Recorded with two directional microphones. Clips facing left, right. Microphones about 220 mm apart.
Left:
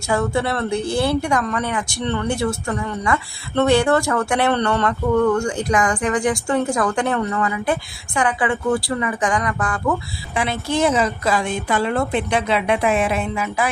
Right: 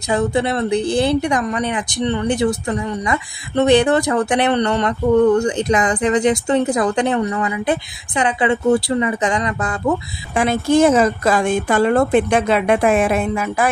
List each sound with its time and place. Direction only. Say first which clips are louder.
0.1 s speech: right 3 dB; 20° right (ahead or behind)
10.3 s a woman's voice: right 7 dB; 45° right (ahead or behind)